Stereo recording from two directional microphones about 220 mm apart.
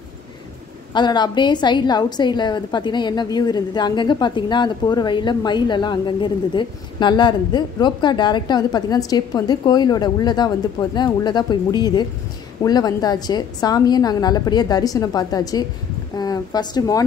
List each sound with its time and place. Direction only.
0.9 s a woman's voice: 20° left (ahead or behind)